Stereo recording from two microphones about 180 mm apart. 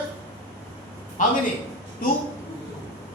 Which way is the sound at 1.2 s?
45° left (ahead or behind).